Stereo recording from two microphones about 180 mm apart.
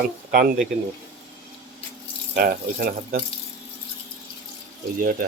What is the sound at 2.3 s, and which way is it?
Speech, 55° right (ahead or behind).